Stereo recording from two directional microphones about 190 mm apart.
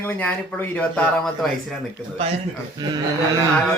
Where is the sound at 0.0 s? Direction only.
10° left (ahead or behind).